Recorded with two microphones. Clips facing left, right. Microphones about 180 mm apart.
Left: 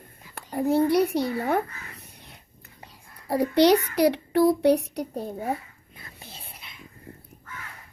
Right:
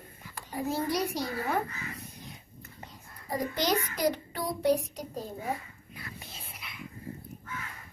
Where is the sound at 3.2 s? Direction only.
70° left (ahead or behind).